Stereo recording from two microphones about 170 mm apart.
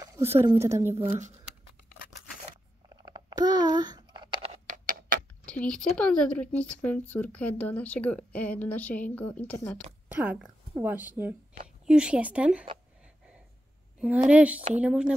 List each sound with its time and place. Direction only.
0.0 s a sound: 15° right (ahead or behind)
0.5 s speech: 15° right (ahead or behind)
3.1 s a sound: 25° right (ahead or behind)
4.4 s music: 45° right (ahead or behind)
5.4 s speech: 5° left (ahead or behind)
10.0 s speech: 10° right (ahead or behind)
13.9 s speech: 5° right (ahead or behind)